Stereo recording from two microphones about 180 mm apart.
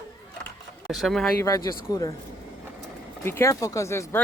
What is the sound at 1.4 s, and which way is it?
Speech, 20° left (ahead or behind).